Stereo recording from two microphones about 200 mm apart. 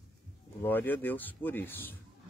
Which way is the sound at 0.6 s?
10° left (ahead or behind).